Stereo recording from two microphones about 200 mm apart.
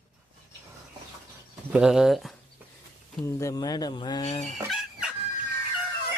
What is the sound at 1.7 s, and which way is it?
Speech, 5° right (ahead or behind).